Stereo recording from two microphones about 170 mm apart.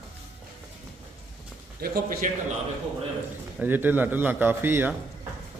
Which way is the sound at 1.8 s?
55° right (ahead or behind).